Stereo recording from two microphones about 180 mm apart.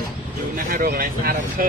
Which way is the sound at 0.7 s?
55° right (ahead or behind).